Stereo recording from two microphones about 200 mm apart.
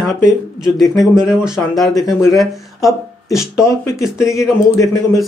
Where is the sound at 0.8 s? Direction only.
20° left (ahead or behind).